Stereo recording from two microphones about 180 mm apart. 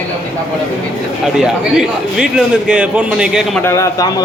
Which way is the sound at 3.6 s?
15° left (ahead or behind).